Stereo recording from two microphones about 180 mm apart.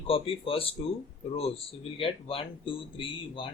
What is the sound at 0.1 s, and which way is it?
Speech, 30° left (ahead or behind).